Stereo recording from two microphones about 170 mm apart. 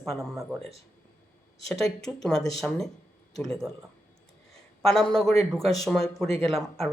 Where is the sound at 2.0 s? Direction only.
5° left (ahead or behind).